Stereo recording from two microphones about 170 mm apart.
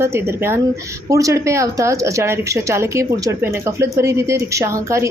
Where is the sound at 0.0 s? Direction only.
15° right (ahead or behind).